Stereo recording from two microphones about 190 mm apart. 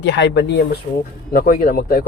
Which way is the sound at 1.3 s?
50° left (ahead or behind).